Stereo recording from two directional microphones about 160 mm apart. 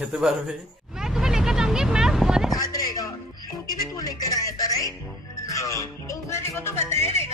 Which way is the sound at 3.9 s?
20° left (ahead or behind).